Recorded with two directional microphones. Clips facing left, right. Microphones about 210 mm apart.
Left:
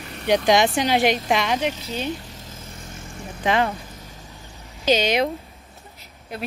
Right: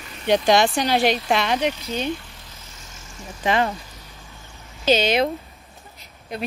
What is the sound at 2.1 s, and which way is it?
Vehicle, 40° left (ahead or behind).